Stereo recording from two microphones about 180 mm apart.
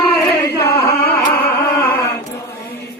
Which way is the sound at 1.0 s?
10° left (ahead or behind).